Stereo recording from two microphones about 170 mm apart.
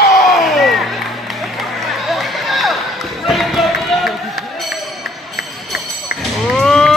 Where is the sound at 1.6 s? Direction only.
Centre (ahead or behind).